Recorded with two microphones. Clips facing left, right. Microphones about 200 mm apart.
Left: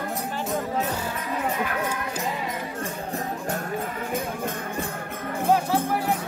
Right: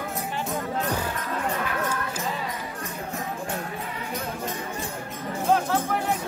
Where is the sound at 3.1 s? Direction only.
45° left (ahead or behind).